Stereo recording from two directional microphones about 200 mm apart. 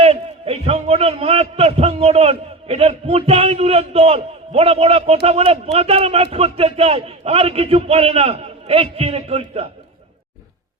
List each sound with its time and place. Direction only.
0.0 s a man's voice: 30° right (ahead or behind)